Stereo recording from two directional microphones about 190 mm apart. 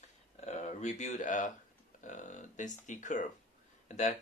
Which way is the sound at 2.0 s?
40° left (ahead or behind).